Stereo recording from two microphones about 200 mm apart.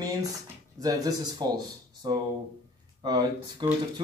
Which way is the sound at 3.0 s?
20° right (ahead or behind).